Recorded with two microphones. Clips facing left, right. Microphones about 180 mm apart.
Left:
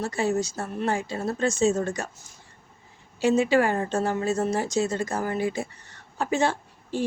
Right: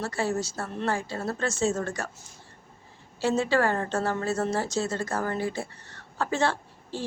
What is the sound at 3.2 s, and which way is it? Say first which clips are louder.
A woman's voice: left 4 dB; 15° left (ahead or behind).